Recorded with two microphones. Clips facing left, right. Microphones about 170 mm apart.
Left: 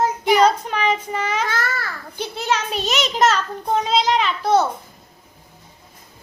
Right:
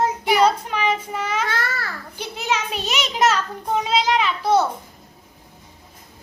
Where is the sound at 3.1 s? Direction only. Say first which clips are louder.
Even; 10° right (ahead or behind).